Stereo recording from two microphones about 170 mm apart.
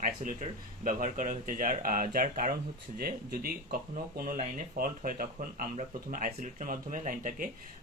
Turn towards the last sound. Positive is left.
turn(degrees=-50)  # may be behind; listen again after turning